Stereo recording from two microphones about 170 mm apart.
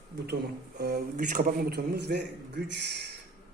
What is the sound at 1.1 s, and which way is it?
A man's voice, 50° right (ahead or behind).